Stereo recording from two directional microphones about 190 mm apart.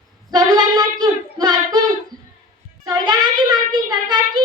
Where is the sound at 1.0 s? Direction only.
20° right (ahead or behind).